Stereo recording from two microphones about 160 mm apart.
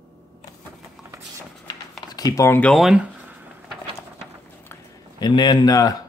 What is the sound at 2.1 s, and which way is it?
Speech, 25° left (ahead or behind).